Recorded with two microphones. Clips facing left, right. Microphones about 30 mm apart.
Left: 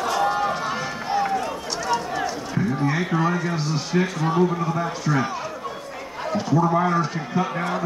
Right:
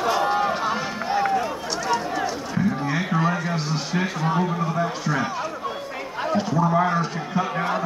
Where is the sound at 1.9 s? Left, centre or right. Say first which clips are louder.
Even; centre.